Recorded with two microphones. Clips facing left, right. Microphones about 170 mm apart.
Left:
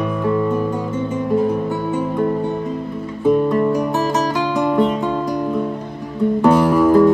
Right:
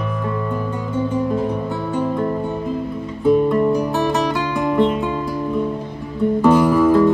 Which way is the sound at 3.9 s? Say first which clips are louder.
Even; 35° left (ahead or behind).